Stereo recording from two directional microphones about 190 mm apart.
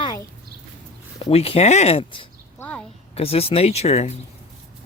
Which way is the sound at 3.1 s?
30° left (ahead or behind).